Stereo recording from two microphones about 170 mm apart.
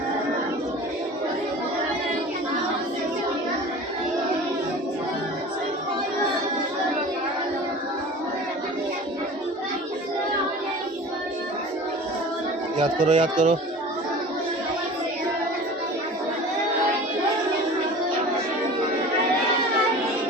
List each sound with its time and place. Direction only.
13.0 s speech: 50° right (ahead or behind)